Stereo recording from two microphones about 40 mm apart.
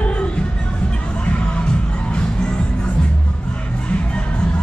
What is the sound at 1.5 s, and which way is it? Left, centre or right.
Music, left.